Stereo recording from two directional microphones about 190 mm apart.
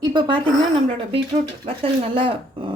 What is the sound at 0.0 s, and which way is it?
Speech, 25° right (ahead or behind).